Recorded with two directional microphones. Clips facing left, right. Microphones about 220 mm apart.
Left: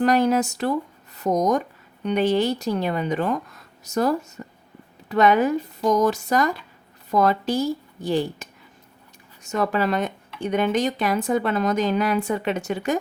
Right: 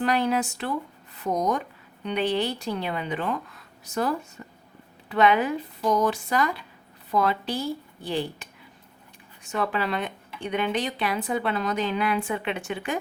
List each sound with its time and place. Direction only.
0.0 s speech: 45° left (ahead or behind)
4.4 s a sound: 40° left (ahead or behind)
5.0 s speech: 45° left (ahead or behind)